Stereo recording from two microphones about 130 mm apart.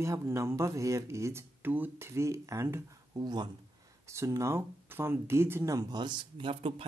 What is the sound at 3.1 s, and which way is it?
Speech, 35° right (ahead or behind).